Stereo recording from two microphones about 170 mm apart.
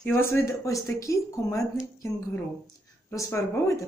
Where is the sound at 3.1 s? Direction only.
15° left (ahead or behind).